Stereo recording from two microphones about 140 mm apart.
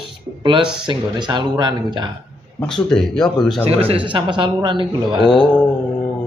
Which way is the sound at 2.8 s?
5° left (ahead or behind).